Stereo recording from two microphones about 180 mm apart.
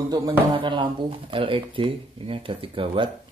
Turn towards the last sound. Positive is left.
turn(degrees=-30)  # may be behind; listen again after turning